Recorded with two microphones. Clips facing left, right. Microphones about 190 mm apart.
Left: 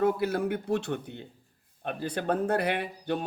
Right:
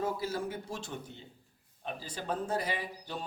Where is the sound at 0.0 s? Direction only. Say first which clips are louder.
Left 8 dB; 65° left (ahead or behind).